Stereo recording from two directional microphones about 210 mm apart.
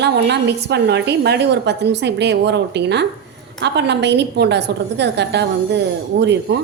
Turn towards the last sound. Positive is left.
turn(degrees=-55)  # may be behind; listen again after turning